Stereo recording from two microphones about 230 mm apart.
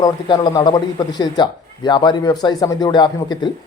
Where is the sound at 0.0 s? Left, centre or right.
Centre.